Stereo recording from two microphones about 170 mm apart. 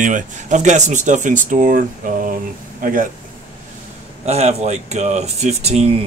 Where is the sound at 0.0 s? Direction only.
45° right (ahead or behind).